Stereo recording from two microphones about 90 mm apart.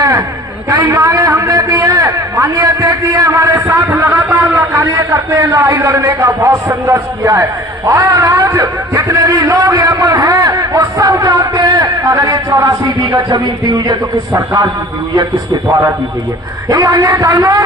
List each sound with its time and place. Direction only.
0.0 s a sound: 35° right (ahead or behind)
0.7 s a man's voice: 40° right (ahead or behind)
15.7 s a man's voice: 35° right (ahead or behind)